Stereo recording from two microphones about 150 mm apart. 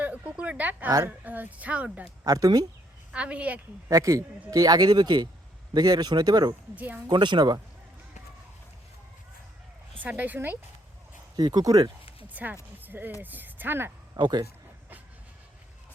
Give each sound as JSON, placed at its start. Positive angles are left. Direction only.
{"t": 0.0, "sound": "speech", "side_deg": -10}
{"t": 0.9, "sound": "speech", "side_deg": -20}
{"t": 1.2, "sound": "speech", "side_deg": -10}
{"t": 2.2, "sound": "speech", "side_deg": -25}
{"t": 3.1, "sound": "speech", "side_deg": -10}
{"t": 3.8, "sound": "speech", "side_deg": -20}
{"t": 6.7, "sound": "speech", "side_deg": -10}
{"t": 7.1, "sound": "speech", "side_deg": -30}
{"t": 10.0, "sound": "speech", "side_deg": -10}
{"t": 11.3, "sound": "speech", "side_deg": -25}
{"t": 12.3, "sound": "speech", "side_deg": -10}
{"t": 12.8, "sound": "a sound", "side_deg": -10}
{"t": 14.2, "sound": "speech", "side_deg": -30}